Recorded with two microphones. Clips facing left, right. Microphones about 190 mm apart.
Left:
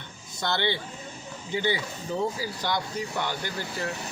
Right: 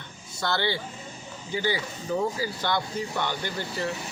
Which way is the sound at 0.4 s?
20° left (ahead or behind).